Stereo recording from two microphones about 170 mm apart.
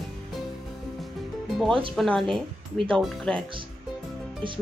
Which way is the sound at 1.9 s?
Centre (ahead or behind).